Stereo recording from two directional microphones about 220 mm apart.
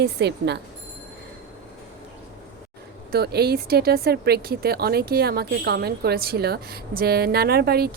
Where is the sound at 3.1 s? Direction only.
45° right (ahead or behind).